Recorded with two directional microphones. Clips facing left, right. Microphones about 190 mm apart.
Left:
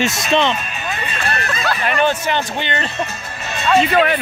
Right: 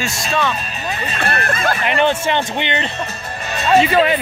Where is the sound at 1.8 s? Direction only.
25° right (ahead or behind).